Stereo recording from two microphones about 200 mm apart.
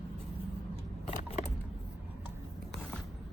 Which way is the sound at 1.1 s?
35° left (ahead or behind).